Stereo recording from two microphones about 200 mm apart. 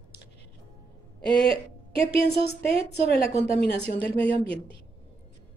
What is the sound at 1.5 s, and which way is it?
A woman's voice, 30° right (ahead or behind).